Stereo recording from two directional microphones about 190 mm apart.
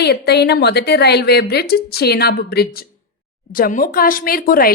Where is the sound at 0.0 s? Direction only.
60° left (ahead or behind).